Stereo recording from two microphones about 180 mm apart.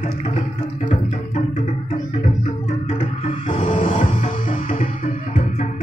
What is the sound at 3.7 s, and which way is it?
Music, 45° left (ahead or behind).